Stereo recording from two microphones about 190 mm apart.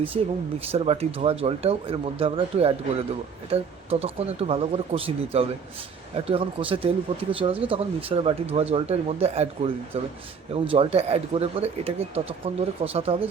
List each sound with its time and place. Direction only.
0.1 s speech: 30° right (ahead or behind)